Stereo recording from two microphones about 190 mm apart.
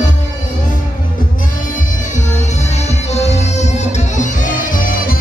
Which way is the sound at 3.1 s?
35° left (ahead or behind).